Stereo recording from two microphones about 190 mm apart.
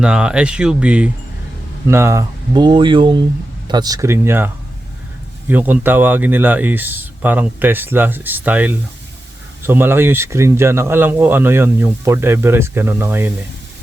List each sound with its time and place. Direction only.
0.0 s speech: 5° right (ahead or behind)